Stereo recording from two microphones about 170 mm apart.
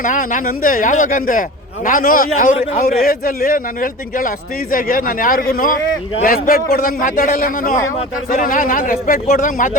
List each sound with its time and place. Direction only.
0.0 s a man's voice: 50° left (ahead or behind)
3.0 s a man's voice: 55° left (ahead or behind)